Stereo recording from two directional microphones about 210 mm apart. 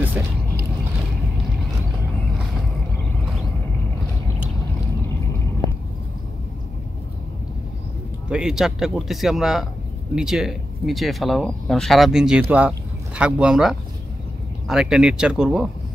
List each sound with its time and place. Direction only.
0.2 s vehicle: 10° right (ahead or behind)
8.3 s speech: 5° right (ahead or behind)